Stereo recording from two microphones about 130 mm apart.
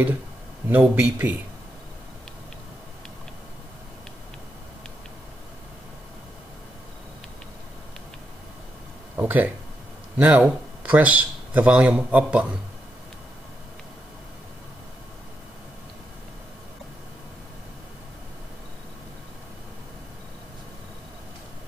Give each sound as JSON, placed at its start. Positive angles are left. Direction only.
{"t": 0.7, "sound": "speech", "side_deg": -10}
{"t": 9.1, "sound": "speech", "side_deg": -15}